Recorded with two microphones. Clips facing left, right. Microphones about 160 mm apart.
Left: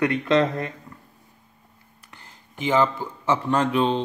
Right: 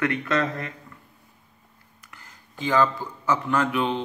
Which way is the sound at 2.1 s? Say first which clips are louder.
Left 1 dB; 25° left (ahead or behind).